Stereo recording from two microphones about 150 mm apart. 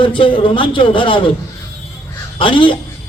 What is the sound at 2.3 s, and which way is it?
Speech, 35° left (ahead or behind).